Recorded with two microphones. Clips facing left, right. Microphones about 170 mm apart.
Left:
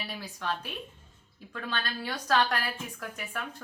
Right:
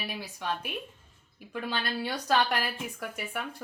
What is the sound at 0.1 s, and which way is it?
A woman's voice, 15° right (ahead or behind).